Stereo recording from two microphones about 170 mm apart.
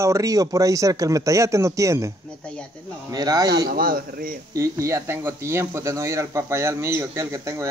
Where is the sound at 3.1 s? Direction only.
20° right (ahead or behind).